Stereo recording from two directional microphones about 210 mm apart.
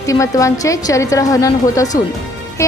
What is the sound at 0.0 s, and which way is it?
A woman's voice, 15° left (ahead or behind).